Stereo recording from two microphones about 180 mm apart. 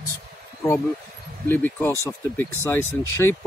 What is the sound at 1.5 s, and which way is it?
Speech, 10° left (ahead or behind).